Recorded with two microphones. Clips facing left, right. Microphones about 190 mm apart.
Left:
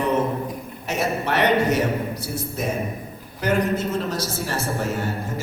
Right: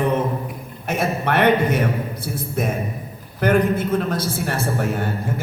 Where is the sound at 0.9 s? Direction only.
55° right (ahead or behind).